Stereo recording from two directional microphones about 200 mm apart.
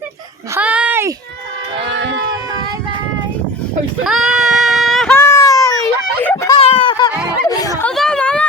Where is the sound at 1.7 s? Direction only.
65° right (ahead or behind).